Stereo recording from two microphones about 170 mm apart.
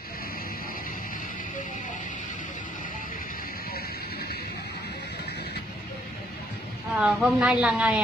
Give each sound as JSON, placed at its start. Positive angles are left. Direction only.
{"t": 7.0, "sound": "speech", "side_deg": -5}